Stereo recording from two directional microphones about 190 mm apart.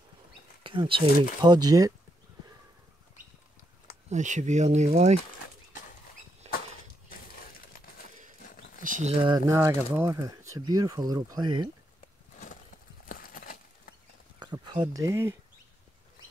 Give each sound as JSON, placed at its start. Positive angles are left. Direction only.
{"t": 0.7, "sound": "speech", "side_deg": -25}
{"t": 4.1, "sound": "speech", "side_deg": -40}
{"t": 6.4, "sound": "a sound", "side_deg": -35}
{"t": 7.1, "sound": "a sound", "side_deg": 50}
{"t": 8.8, "sound": "speech", "side_deg": -40}
{"t": 9.2, "sound": "speech", "side_deg": -20}
{"t": 13.1, "sound": "horse", "side_deg": 45}
{"t": 14.4, "sound": "speech", "side_deg": -25}